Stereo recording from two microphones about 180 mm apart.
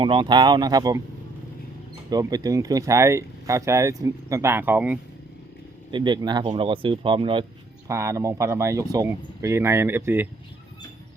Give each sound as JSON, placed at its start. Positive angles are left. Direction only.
{"t": 0.0, "sound": "speech", "side_deg": -25}
{"t": 2.0, "sound": "speech", "side_deg": -20}
{"t": 5.9, "sound": "speech", "side_deg": -25}
{"t": 7.9, "sound": "speech", "side_deg": -15}